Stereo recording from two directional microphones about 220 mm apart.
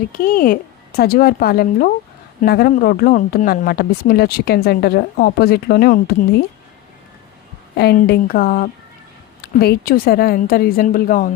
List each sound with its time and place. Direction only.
0.1 s speech: 40° left (ahead or behind)
7.8 s a woman's voice: 45° left (ahead or behind)